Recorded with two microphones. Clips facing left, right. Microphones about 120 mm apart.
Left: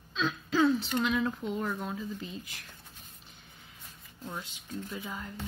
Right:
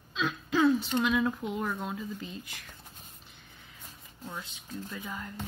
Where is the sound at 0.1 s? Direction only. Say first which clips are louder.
Right 1 dB; 5° right (ahead or behind).